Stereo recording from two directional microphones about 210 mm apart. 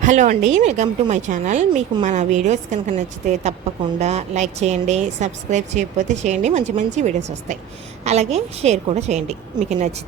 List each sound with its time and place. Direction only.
0.0 s a woman's voice: 35° right (ahead or behind)